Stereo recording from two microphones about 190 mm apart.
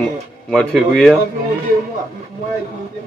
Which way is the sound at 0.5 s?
5° left (ahead or behind).